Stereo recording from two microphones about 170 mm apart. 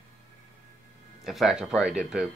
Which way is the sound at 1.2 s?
Centre (ahead or behind).